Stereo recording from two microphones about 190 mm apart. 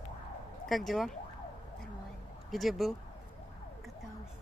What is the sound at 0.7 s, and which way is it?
Speech, centre (ahead or behind).